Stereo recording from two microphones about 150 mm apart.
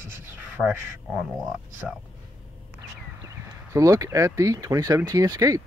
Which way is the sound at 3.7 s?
20° right (ahead or behind).